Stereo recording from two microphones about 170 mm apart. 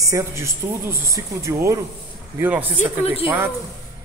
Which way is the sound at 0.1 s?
15° right (ahead or behind).